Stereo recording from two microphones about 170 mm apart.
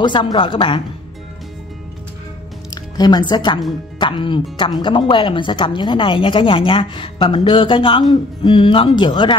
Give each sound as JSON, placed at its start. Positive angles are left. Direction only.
{"t": 0.0, "sound": "speech", "side_deg": 25}
{"t": 2.7, "sound": "speech", "side_deg": 25}